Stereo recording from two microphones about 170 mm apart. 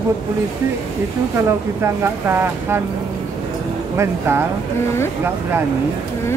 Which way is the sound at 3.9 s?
15° right (ahead or behind).